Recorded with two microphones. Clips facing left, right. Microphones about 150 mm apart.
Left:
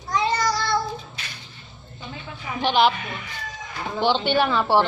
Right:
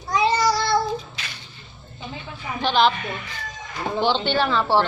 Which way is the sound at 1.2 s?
90° right.